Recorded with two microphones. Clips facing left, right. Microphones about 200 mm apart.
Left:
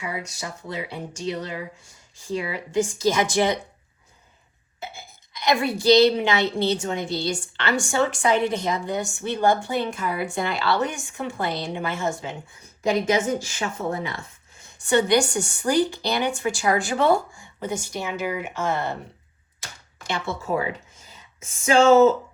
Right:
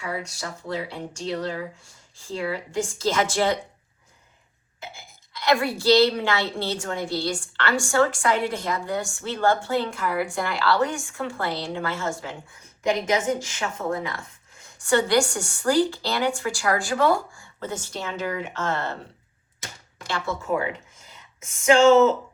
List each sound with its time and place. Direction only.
0.0 s a woman's voice: 20° left (ahead or behind)
5.3 s a woman's voice: 15° left (ahead or behind)
13.1 s a woman's voice: 30° left (ahead or behind); by 19.0 s 15° left (ahead or behind)
20.1 s speech: 20° left (ahead or behind)
21.6 s speech: 30° left (ahead or behind)